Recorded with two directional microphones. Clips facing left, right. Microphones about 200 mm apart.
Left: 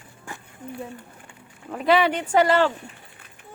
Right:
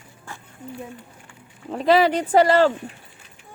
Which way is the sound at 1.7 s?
35° right (ahead or behind).